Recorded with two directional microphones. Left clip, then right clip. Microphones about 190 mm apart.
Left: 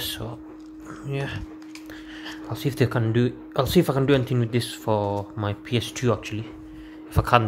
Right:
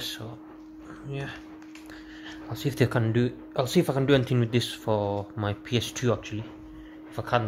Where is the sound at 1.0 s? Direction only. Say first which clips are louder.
Left 6 dB; 15° left (ahead or behind).